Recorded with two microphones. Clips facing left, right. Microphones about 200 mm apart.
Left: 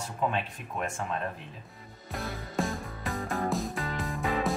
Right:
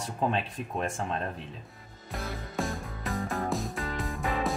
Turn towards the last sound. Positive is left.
turn(degrees=0)  # may be behind; listen again after turning